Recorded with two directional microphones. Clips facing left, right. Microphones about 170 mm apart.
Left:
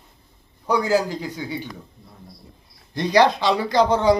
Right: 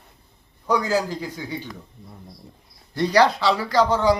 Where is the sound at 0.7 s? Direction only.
15° left (ahead or behind).